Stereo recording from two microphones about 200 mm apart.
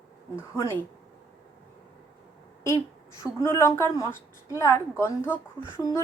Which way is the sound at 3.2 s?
15° left (ahead or behind).